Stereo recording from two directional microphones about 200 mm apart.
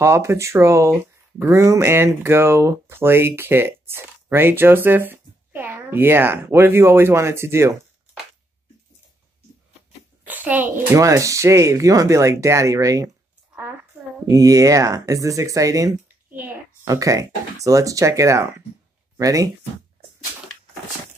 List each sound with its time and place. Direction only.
0.0 s speech: 15° right (ahead or behind)
10.2 s speech: 10° right (ahead or behind)
14.3 s speech: 15° right (ahead or behind)